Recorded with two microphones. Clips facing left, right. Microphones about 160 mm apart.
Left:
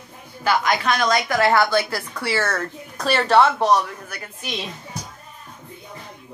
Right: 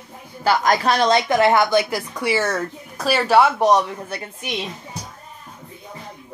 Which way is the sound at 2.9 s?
5° right (ahead or behind).